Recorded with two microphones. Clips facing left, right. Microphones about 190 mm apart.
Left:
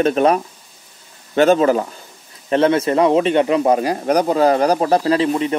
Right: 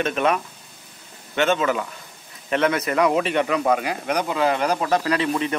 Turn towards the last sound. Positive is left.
turn(degrees=25)  # may be behind; listen again after turning